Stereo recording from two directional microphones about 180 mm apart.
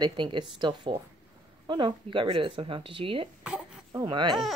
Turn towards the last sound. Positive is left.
turn(degrees=-25)  # may be behind; listen again after turning